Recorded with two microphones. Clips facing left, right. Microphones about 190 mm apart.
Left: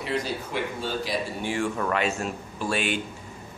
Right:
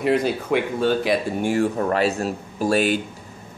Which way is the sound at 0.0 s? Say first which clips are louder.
Right 9 dB; 55° right (ahead or behind).